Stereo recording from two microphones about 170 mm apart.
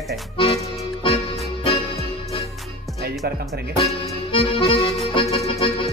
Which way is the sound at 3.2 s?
65° right (ahead or behind).